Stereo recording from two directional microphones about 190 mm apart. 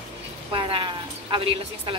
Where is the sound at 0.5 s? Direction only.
25° right (ahead or behind).